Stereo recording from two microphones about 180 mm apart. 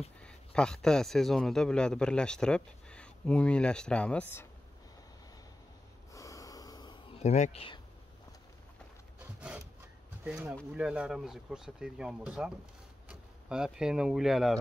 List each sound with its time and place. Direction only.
0.2 s a man's voice: 5° left (ahead or behind)
6.1 s snort: 20° left (ahead or behind)
7.2 s speech: 40° left (ahead or behind)
10.2 s speech: 5° right (ahead or behind)